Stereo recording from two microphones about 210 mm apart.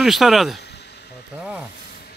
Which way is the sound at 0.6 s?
50° left (ahead or behind).